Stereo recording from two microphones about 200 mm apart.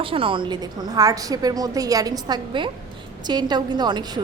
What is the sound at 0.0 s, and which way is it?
A woman's voice, 25° right (ahead or behind).